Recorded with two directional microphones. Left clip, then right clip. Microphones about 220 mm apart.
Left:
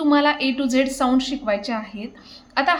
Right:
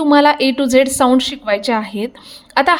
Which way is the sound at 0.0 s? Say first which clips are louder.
Right 7 dB; 35° right (ahead or behind).